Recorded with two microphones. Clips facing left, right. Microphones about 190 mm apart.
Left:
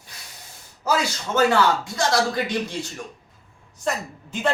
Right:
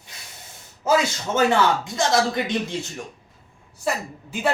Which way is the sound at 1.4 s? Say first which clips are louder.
Even; 20° right (ahead or behind).